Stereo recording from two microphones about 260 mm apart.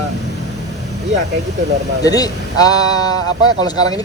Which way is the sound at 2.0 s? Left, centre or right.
Centre.